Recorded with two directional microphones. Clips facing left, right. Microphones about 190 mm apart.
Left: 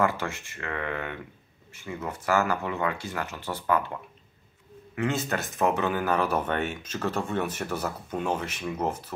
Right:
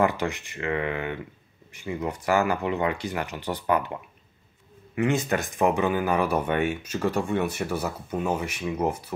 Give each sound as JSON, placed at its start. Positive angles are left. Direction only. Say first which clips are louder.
{"t": 0.0, "sound": "speech", "louder": "right 3 dB", "side_deg": -15}